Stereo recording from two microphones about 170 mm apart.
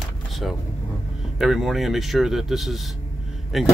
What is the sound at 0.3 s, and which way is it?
Vehicle, centre (ahead or behind).